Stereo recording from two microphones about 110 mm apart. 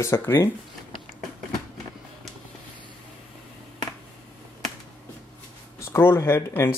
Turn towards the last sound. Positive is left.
turn(degrees=20)  # may be behind; listen again after turning